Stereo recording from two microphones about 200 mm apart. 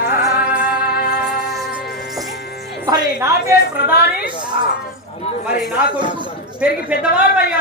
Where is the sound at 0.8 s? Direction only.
50° left (ahead or behind).